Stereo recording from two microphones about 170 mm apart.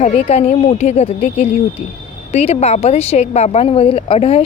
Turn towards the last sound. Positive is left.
turn(degrees=35)  # may be behind; listen again after turning